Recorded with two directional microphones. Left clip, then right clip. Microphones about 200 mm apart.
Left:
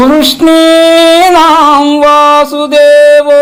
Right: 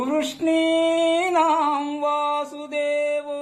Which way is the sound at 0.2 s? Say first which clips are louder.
Left 16 dB; 35° left (ahead or behind).